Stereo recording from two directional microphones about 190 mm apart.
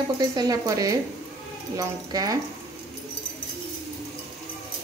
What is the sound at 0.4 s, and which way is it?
Speech, 20° right (ahead or behind).